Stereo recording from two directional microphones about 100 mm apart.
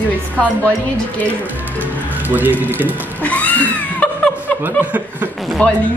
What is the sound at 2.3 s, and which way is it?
Speech, 20° right (ahead or behind).